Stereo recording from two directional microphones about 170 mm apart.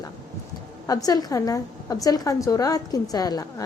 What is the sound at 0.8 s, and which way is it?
A woman's voice, 20° left (ahead or behind).